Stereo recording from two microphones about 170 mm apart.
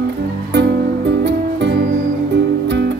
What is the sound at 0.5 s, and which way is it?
Music, 90° right.